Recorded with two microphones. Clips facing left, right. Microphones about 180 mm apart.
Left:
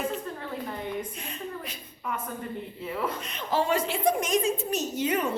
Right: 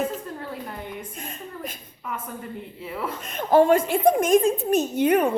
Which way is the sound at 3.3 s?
50° right (ahead or behind).